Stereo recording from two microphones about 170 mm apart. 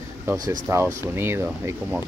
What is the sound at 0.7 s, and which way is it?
Speech, 15° right (ahead or behind).